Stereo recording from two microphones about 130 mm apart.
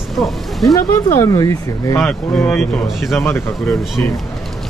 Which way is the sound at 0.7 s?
25° left (ahead or behind).